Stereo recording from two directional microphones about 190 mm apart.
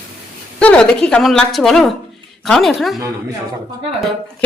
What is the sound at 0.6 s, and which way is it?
A woman's voice, 5° left (ahead or behind).